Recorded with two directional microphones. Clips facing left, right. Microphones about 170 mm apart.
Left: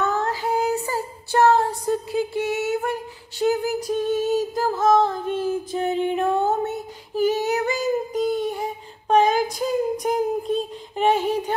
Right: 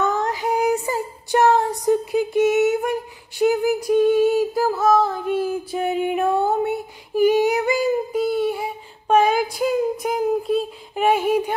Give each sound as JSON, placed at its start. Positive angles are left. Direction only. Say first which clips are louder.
{"t": 0.0, "sound": "female singing", "louder": "right 2 dB", "side_deg": -15}